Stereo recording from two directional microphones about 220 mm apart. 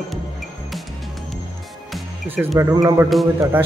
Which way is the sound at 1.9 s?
5° right (ahead or behind).